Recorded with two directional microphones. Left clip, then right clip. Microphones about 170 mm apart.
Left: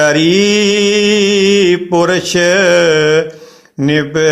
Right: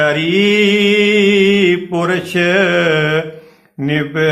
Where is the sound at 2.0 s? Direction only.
40° left (ahead or behind).